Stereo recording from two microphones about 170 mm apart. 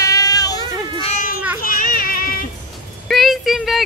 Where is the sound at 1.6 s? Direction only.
55° left (ahead or behind).